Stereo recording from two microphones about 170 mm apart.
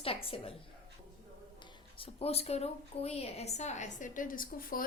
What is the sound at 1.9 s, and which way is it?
A woman's voice, 35° left (ahead or behind).